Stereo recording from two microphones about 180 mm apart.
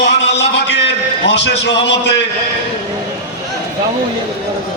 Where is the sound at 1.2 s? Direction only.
80° left.